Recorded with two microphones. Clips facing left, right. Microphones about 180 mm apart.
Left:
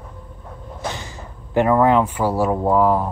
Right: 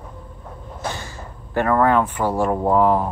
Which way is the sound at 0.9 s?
20° left (ahead or behind).